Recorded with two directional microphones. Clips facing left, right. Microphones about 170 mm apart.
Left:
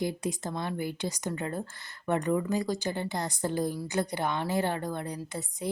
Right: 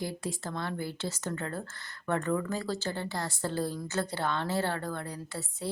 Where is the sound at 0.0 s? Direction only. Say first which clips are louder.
Left 4 dB; 20° left (ahead or behind).